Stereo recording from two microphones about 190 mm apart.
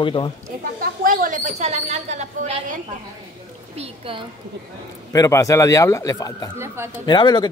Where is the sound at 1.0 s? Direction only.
45° right (ahead or behind); by 4.3 s 30° right (ahead or behind).